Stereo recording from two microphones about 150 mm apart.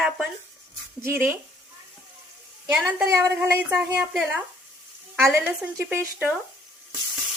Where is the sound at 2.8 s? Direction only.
5° right (ahead or behind).